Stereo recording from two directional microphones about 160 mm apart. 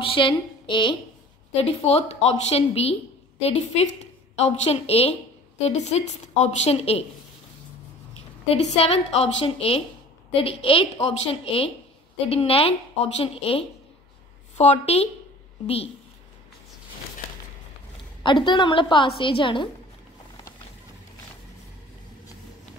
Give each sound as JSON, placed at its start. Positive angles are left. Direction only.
{"t": 0.0, "sound": "a woman's voice", "side_deg": 30}
{"t": 8.5, "sound": "a woman's voice", "side_deg": 40}
{"t": 18.2, "sound": "speech", "side_deg": 30}